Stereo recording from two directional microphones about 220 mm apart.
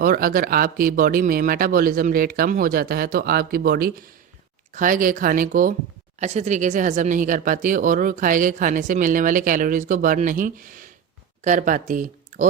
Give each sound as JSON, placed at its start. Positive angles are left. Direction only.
{"t": 0.0, "sound": "speech", "side_deg": -40}